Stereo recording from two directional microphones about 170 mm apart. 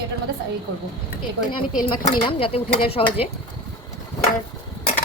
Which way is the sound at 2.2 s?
30° left (ahead or behind).